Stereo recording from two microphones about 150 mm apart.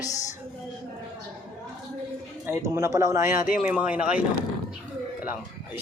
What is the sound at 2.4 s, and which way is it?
Speech, 20° right (ahead or behind).